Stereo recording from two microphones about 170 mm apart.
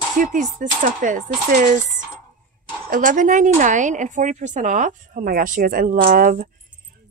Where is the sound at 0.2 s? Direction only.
50° right (ahead or behind).